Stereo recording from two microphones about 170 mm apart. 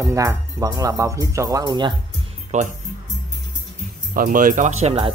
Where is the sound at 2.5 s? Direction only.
45° right (ahead or behind).